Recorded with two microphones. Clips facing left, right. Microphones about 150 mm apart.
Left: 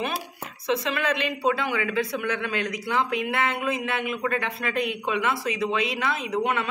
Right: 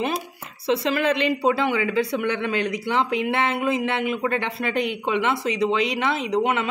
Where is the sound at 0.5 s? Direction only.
30° right (ahead or behind).